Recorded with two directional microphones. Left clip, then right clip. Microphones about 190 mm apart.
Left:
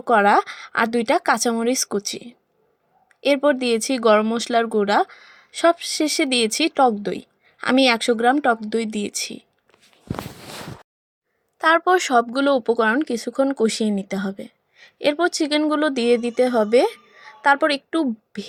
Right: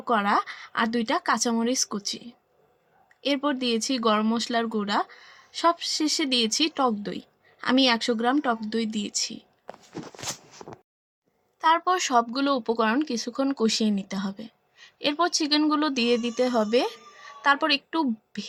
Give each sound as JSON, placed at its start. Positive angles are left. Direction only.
{"t": 0.0, "sound": "speech", "side_deg": 35}
{"t": 11.6, "sound": "speech", "side_deg": 35}